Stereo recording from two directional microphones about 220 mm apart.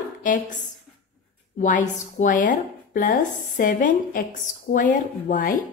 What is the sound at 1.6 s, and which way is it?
A woman's voice, 35° left (ahead or behind).